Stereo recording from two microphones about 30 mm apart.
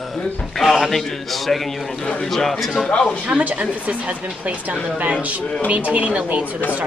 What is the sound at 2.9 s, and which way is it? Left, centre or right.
Speech, left.